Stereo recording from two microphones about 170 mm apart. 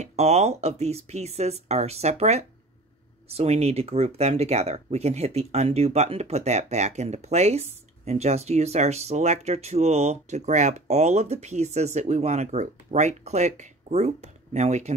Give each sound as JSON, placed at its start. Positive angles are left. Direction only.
{"t": 0.0, "sound": "speech", "side_deg": -40}